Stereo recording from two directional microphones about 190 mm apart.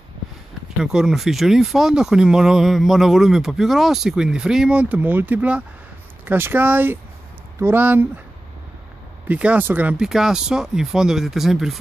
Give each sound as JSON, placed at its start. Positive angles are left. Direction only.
{"t": 0.7, "sound": "speech", "side_deg": -5}
{"t": 9.3, "sound": "speech", "side_deg": -5}